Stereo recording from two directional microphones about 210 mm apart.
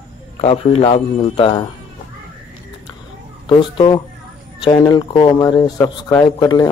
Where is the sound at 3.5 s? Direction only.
25° left (ahead or behind).